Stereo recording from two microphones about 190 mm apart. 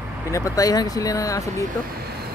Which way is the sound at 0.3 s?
15° left (ahead or behind).